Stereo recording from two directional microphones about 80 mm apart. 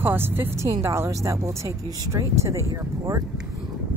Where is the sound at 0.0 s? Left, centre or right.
Right.